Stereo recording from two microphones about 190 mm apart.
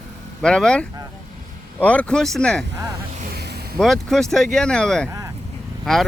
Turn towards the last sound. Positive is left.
turn(degrees=5)  # may be behind; listen again after turning